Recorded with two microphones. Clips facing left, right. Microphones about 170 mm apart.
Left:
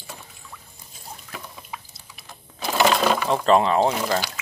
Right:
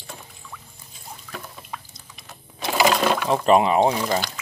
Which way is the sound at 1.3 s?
5° left (ahead or behind).